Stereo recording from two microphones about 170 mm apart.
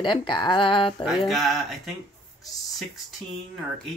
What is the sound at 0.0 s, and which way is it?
Speech, 25° left (ahead or behind).